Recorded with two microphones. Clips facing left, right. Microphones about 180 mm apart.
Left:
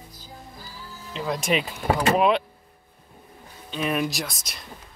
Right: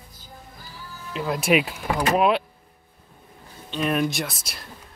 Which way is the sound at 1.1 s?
5° right (ahead or behind).